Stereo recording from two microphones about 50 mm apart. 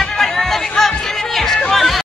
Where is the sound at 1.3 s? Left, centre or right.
Centre.